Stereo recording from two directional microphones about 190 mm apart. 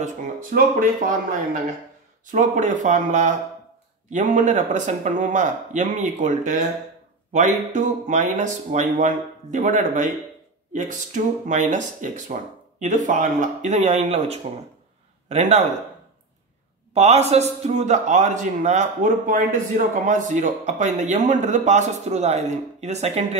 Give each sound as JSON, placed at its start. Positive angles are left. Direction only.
{"t": 0.0, "sound": "speech", "side_deg": -45}
{"t": 16.9, "sound": "speech", "side_deg": -35}